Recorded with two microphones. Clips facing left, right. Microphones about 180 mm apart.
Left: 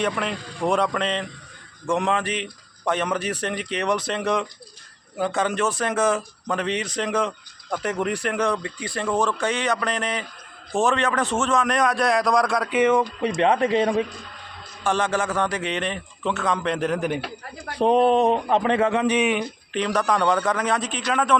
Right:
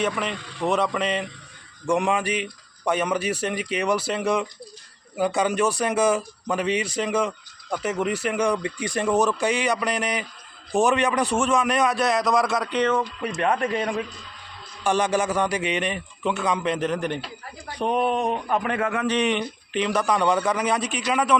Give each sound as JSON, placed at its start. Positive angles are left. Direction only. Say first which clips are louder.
{"t": 0.0, "sound": "speech", "louder": "left 1 dB", "side_deg": 0}
{"t": 12.7, "sound": "speech", "louder": "left 5 dB", "side_deg": 10}
{"t": 13.4, "sound": "speech", "louder": "left 4 dB", "side_deg": 25}
{"t": 14.8, "sound": "speech", "louder": "right 1 dB", "side_deg": -15}
{"t": 17.7, "sound": "speech", "louder": "left 6 dB", "side_deg": 30}
{"t": 19.1, "sound": "speech", "louder": "left 1 dB", "side_deg": 5}